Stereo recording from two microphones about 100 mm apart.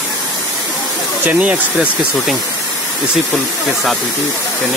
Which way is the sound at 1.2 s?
15° right (ahead or behind).